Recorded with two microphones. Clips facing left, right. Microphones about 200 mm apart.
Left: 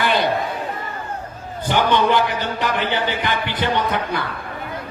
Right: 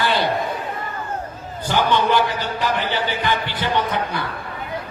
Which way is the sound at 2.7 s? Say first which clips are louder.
Left 1 dB; 15° left (ahead or behind).